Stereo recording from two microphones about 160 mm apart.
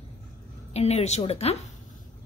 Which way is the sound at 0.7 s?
40° left (ahead or behind).